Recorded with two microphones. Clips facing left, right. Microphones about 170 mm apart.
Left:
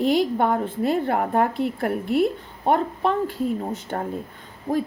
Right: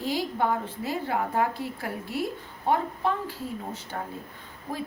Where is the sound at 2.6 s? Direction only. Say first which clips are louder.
Left 5 dB; 75° left (ahead or behind).